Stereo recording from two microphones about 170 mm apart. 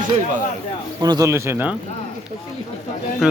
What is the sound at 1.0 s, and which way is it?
Speech, 20° right (ahead or behind).